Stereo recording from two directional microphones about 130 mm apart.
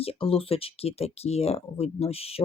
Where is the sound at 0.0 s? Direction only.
45° left (ahead or behind).